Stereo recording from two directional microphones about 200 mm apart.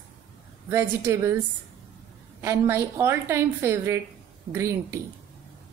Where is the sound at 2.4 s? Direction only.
15° right (ahead or behind).